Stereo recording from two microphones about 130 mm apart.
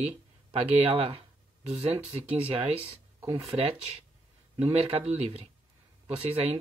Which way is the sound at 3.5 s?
15° right (ahead or behind).